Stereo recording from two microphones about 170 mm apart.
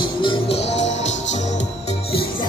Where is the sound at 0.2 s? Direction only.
30° left (ahead or behind).